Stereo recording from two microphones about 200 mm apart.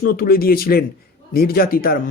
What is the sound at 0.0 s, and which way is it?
Speech, 45° left (ahead or behind).